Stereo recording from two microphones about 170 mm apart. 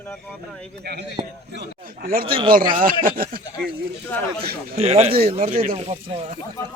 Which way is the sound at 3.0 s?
60° right (ahead or behind).